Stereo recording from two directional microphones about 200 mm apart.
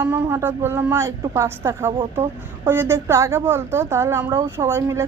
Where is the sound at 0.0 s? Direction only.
10° right (ahead or behind).